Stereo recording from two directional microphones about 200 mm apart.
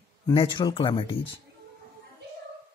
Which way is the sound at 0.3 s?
25° left (ahead or behind).